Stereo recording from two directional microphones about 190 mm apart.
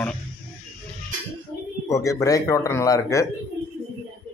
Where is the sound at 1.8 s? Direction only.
15° left (ahead or behind).